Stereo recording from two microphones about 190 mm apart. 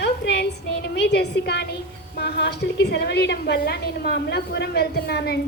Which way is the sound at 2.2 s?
60° left (ahead or behind).